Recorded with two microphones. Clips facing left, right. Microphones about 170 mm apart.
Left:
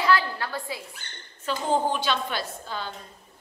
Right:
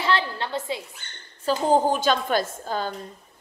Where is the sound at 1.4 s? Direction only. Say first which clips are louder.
Right 5 dB; 40° right (ahead or behind).